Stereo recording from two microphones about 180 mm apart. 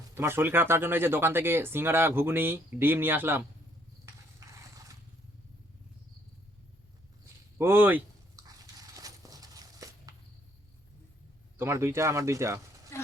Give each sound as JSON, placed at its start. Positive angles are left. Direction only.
{"t": 0.1, "sound": "speech", "side_deg": -15}
{"t": 4.0, "sound": "a sound", "side_deg": -15}
{"t": 7.6, "sound": "speech", "side_deg": -10}
{"t": 8.4, "sound": "horse", "side_deg": -20}
{"t": 11.5, "sound": "speech", "side_deg": -15}
{"t": 12.9, "sound": "a sound", "side_deg": 15}